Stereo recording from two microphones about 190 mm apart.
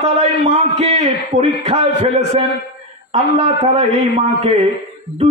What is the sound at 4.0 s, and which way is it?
Speech, 35° right (ahead or behind).